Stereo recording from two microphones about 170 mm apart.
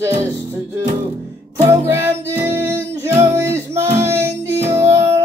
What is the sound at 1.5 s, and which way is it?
Music, 15° right (ahead or behind).